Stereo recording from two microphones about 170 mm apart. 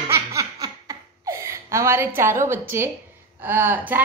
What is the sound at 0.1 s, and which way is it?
Laughter, 20° right (ahead or behind).